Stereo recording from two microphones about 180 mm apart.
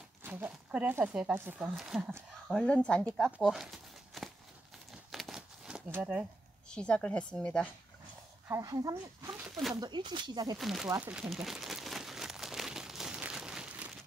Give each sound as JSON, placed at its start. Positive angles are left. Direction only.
{"t": 0.2, "sound": "speech", "side_deg": -10}
{"t": 2.5, "sound": "speech", "side_deg": 5}
{"t": 3.3, "sound": "a sound", "side_deg": -5}
{"t": 5.1, "sound": "crumpling", "side_deg": 0}
{"t": 6.7, "sound": "speech", "side_deg": 5}
{"t": 8.5, "sound": "speech", "side_deg": -20}
{"t": 9.4, "sound": "a sound", "side_deg": 0}
{"t": 9.8, "sound": "speech", "side_deg": -25}
{"t": 10.6, "sound": "crumpling", "side_deg": 0}